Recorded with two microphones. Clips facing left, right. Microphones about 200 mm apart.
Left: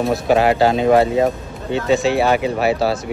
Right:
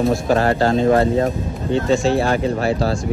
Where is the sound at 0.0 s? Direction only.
5° left (ahead or behind).